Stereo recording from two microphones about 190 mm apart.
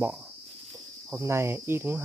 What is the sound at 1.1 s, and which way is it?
Speech, 15° right (ahead or behind).